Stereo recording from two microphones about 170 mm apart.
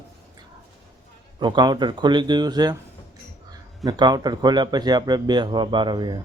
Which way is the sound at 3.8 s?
25° right (ahead or behind).